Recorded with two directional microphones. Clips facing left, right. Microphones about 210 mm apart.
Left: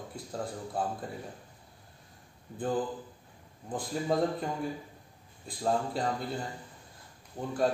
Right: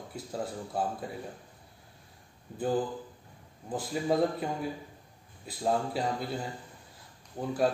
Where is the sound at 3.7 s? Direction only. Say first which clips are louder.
Right 1 dB; 5° right (ahead or behind).